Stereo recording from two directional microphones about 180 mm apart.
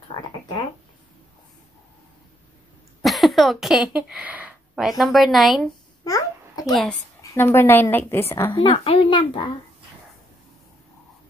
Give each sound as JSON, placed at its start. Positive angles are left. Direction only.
{"t": 0.1, "sound": "a sound", "side_deg": 25}
{"t": 3.0, "sound": "speech", "side_deg": 0}
{"t": 6.0, "sound": "babbling", "side_deg": 20}
{"t": 6.7, "sound": "speech", "side_deg": 0}
{"t": 7.3, "sound": "a woman's voice", "side_deg": 10}
{"t": 8.5, "sound": "a child's voice", "side_deg": 30}